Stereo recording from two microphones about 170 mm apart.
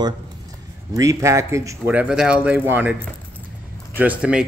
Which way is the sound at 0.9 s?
20° right (ahead or behind).